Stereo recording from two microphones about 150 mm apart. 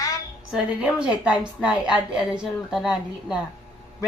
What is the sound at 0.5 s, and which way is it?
A woman's voice, 5° right (ahead or behind).